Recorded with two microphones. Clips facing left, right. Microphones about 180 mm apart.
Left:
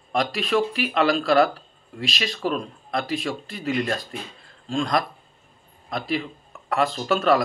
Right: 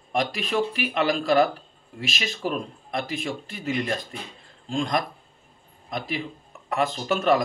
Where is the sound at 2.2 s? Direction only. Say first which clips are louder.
Left 2 dB; 25° right (ahead or behind).